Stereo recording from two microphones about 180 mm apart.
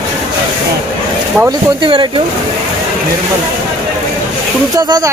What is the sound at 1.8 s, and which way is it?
Speech, 25° right (ahead or behind).